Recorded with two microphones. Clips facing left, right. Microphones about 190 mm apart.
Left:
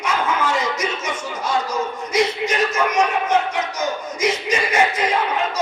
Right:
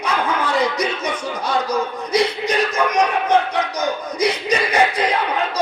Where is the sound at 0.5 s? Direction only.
35° right (ahead or behind).